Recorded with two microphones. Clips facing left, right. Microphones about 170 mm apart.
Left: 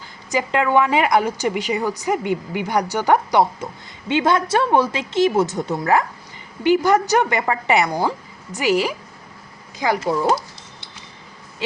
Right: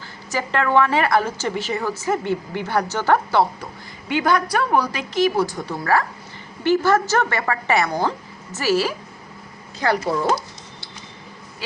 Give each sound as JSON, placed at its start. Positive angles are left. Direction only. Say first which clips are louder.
{"t": 0.3, "sound": "a woman's voice", "louder": "left 2 dB", "side_deg": 15}